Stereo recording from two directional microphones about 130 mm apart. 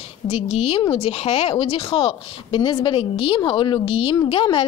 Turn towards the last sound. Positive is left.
turn(degrees=45)  # may be behind; listen again after turning